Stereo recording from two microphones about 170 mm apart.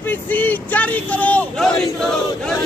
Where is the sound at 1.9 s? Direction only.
5° left (ahead or behind).